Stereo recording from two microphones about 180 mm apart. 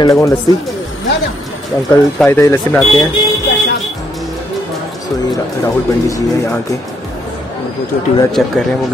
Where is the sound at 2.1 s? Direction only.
10° left (ahead or behind).